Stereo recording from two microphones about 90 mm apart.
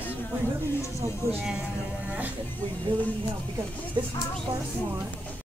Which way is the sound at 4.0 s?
55° right (ahead or behind).